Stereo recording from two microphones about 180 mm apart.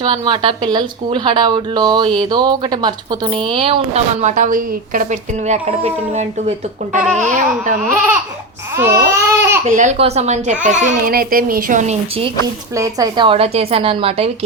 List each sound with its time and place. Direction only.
0.0 s speech: 25° right (ahead or behind); by 5.0 s 50° right (ahead or behind)
5.5 s a woman's voice: 35° right (ahead or behind)
6.9 s speech: 5° right (ahead or behind)
7.3 s speech: 45° right (ahead or behind)
8.7 s baby cry: 15° right (ahead or behind)
9.6 s a woman's voice: 40° right (ahead or behind)
12.7 s a woman's voice: 20° right (ahead or behind)